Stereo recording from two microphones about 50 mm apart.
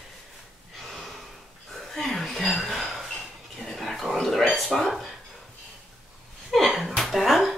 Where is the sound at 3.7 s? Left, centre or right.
Centre.